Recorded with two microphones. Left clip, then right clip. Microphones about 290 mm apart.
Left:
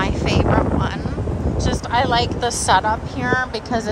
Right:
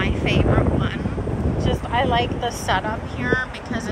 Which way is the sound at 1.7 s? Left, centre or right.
Left.